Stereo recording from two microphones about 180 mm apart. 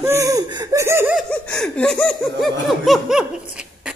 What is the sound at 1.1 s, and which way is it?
Laughter, 5° left (ahead or behind).